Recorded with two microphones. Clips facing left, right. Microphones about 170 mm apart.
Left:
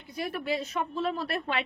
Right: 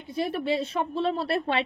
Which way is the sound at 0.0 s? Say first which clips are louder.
Right 5 dB; 25° right (ahead or behind).